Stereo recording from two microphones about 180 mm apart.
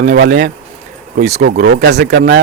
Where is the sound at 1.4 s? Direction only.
65° right (ahead or behind); by 2.4 s 80° right.